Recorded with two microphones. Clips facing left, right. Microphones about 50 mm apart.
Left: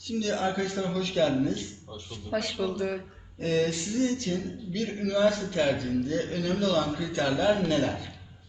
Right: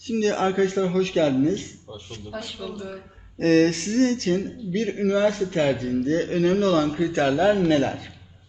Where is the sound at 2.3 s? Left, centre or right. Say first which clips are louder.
Left 5 dB; left.